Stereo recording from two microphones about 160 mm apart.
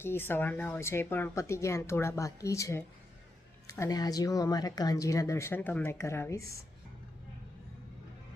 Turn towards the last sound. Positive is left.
turn(degrees=15)  # may be behind; listen again after turning